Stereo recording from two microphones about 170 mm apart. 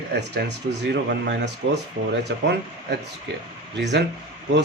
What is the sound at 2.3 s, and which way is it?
Speech, 80° right.